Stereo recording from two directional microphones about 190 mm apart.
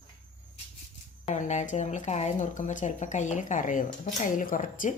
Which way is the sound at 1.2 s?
40° left (ahead or behind).